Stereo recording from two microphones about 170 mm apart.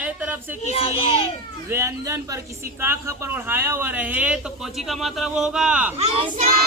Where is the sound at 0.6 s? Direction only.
35° left (ahead or behind).